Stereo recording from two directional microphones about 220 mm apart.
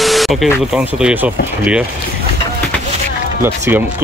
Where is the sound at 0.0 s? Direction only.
Centre (ahead or behind).